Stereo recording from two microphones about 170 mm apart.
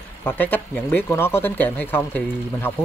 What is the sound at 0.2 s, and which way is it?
Speech, 10° left (ahead or behind).